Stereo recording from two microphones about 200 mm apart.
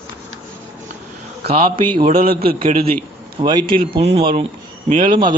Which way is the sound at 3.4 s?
20° right (ahead or behind).